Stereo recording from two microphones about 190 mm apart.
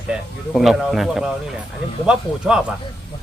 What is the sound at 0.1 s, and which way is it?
Speech, centre (ahead or behind).